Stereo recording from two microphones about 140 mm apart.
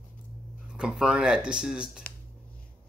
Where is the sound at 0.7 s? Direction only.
5° right (ahead or behind).